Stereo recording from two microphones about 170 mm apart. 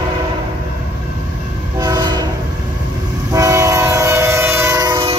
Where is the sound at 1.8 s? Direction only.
25° right (ahead or behind).